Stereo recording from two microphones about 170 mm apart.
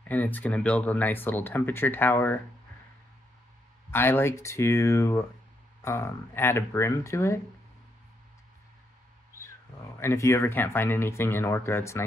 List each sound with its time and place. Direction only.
0.0 s speech: 10° left (ahead or behind)
3.9 s speech: 15° left (ahead or behind)
9.9 s speech: 15° left (ahead or behind)